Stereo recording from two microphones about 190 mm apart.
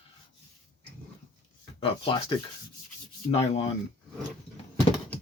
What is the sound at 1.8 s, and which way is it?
Speech, 30° left (ahead or behind).